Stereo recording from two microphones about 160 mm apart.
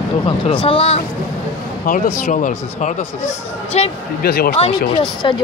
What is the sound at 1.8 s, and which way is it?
Speech, 60° left (ahead or behind).